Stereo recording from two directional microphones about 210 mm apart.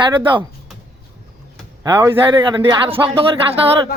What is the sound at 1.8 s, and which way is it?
A man's voice, 10° right (ahead or behind).